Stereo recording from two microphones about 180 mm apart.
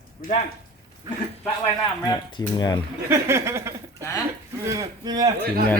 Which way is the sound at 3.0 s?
15° right (ahead or behind).